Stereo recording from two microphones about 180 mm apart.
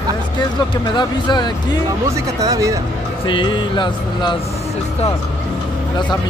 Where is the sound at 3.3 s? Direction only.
25° left (ahead or behind).